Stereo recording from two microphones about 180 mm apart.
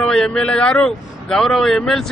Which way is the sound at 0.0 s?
5° left (ahead or behind).